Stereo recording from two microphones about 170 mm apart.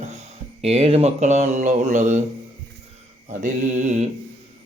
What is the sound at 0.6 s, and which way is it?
Mantra, 35° right (ahead or behind).